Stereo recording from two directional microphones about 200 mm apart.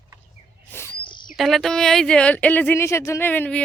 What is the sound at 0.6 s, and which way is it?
Owl, 10° left (ahead or behind).